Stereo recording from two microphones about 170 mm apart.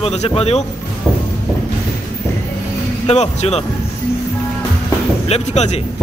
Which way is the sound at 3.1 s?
40° left (ahead or behind).